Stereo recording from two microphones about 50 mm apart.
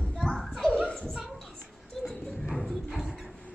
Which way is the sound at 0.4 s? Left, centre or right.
Centre.